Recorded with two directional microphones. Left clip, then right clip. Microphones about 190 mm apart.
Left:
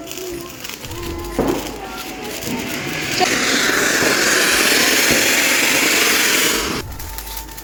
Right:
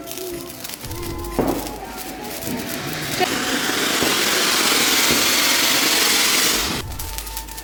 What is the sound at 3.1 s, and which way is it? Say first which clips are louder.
Vehicle: left 5 dB; 15° left (ahead or behind).